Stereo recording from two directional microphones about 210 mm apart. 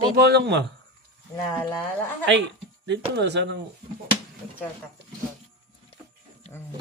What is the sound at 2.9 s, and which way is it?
Speech, 55° right (ahead or behind).